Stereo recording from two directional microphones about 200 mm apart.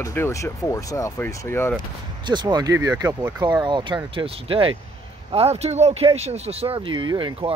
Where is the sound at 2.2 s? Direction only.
20° right (ahead or behind).